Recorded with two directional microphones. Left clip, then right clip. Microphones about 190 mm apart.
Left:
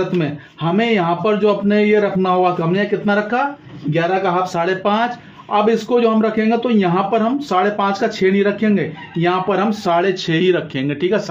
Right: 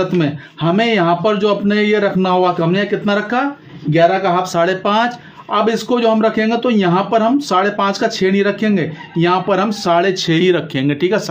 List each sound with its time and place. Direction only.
0.2 s a man's voice: 35° right (ahead or behind)